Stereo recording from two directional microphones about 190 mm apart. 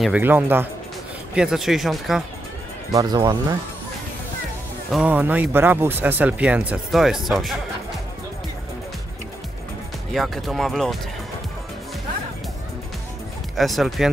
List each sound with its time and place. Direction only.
0.0 s speech: 10° right (ahead or behind)
2.9 s speech: 20° right (ahead or behind)
4.9 s speech: 10° right (ahead or behind)
10.1 s speech: centre (ahead or behind)
13.6 s speech: centre (ahead or behind)